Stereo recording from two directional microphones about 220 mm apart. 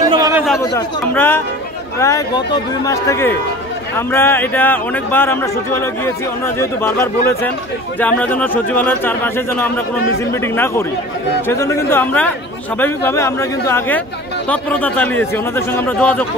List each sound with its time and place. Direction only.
0.0 s chatter: 15° right (ahead or behind)
0.6 s speech: 15° left (ahead or behind)